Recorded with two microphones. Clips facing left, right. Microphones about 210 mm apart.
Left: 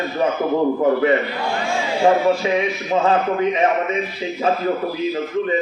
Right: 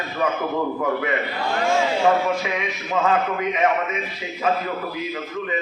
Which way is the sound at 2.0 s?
30° left (ahead or behind).